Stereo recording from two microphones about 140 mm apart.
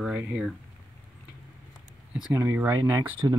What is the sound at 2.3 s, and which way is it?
Speech, 20° right (ahead or behind).